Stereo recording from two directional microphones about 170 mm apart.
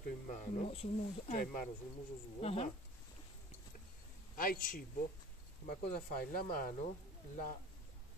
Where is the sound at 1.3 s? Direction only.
55° left (ahead or behind).